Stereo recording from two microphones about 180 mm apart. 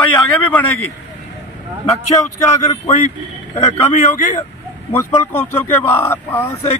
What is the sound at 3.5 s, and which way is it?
Speech, 35° left (ahead or behind).